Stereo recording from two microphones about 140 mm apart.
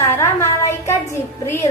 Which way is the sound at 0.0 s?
20° left (ahead or behind).